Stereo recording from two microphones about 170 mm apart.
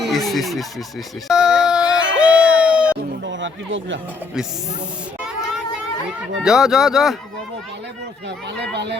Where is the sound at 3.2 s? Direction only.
90° right.